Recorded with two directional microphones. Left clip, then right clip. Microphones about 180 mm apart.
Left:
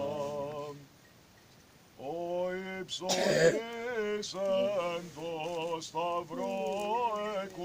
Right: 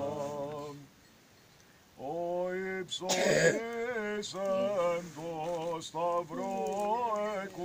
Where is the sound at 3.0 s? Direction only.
60° left (ahead or behind).